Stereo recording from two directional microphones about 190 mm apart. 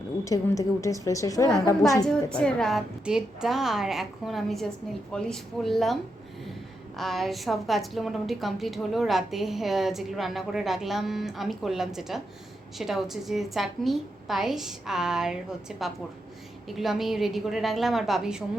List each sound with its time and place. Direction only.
0.3 s a woman's voice: 15° left (ahead or behind)
2.0 s a woman's voice: 5° left (ahead or behind)